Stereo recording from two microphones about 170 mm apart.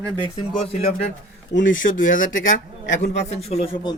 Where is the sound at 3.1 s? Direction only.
35° left (ahead or behind).